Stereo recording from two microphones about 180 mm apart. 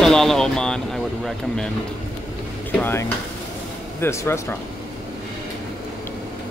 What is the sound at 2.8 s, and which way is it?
Speech, 10° left (ahead or behind).